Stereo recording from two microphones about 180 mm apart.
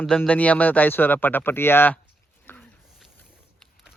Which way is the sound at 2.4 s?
10° left (ahead or behind).